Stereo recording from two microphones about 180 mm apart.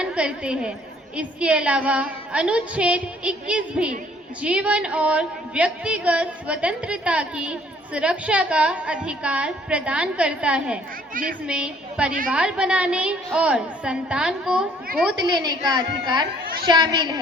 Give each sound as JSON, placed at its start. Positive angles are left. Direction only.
{"t": 0.0, "sound": "a woman's voice", "side_deg": -5}
{"t": 15.2, "sound": "a woman's voice", "side_deg": -25}